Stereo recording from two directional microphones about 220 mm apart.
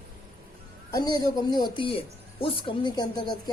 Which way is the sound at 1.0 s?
20° left (ahead or behind).